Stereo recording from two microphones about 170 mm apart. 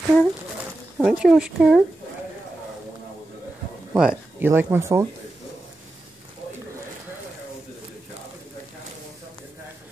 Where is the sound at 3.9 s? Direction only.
10° right (ahead or behind).